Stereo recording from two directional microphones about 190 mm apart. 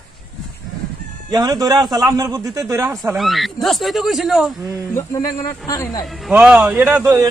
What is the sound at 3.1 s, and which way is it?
Speech, centre (ahead or behind).